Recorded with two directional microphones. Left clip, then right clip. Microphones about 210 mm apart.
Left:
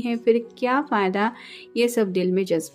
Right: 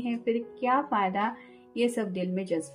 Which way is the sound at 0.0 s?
45° left (ahead or behind).